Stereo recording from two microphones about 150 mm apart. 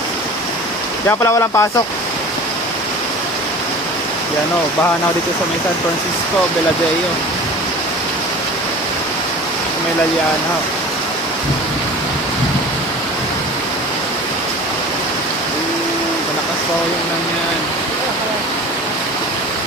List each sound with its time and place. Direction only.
1.0 s speech: 20° left (ahead or behind)